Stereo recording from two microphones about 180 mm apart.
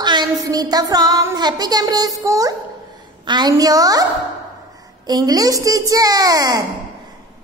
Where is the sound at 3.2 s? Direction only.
25° right (ahead or behind).